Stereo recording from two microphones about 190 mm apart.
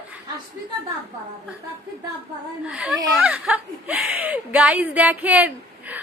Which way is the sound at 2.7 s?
5° right (ahead or behind).